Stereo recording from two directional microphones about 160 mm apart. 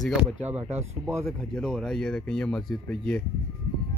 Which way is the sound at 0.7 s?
15° right (ahead or behind).